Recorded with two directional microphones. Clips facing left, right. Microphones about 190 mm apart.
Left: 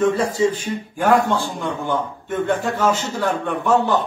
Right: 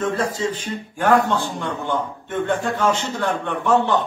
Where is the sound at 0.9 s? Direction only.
10° left (ahead or behind).